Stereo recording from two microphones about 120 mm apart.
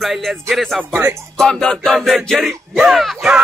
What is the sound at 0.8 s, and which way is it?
Speech, 20° right (ahead or behind).